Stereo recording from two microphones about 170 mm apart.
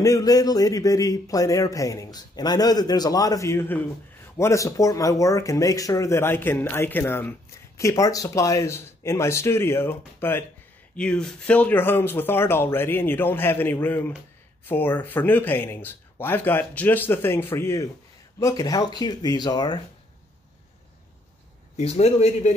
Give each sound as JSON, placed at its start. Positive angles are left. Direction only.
{"t": 0.0, "sound": "a man's voice", "side_deg": 20}
{"t": 21.7, "sound": "speech", "side_deg": 40}